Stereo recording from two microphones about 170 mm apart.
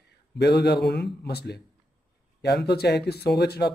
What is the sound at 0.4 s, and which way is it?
Speech, 75° left (ahead or behind).